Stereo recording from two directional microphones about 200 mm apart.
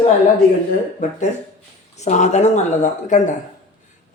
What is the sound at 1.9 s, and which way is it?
Speech, 35° left (ahead or behind).